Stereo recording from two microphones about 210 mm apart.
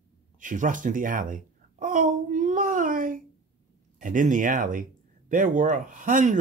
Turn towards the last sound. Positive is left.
turn(degrees=-40)  # may be behind; listen again after turning